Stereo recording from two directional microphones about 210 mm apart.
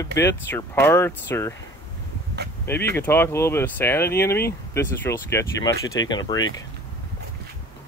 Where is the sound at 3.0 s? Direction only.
10° left (ahead or behind).